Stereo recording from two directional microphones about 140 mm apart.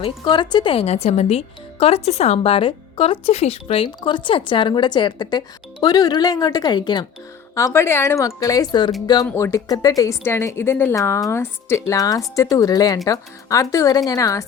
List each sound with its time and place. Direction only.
0.0 s a woman's voice: 35° left (ahead or behind)
7.5 s a woman's voice: 20° left (ahead or behind)
9.2 s a woman's voice: 15° left (ahead or behind)